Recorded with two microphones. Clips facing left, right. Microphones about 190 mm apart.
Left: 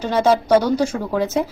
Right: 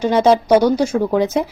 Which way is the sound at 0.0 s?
15° right (ahead or behind).